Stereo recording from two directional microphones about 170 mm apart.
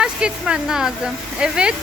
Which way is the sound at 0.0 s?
5° right (ahead or behind).